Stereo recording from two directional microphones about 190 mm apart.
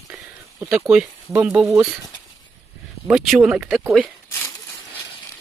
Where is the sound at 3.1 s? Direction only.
5° right (ahead or behind).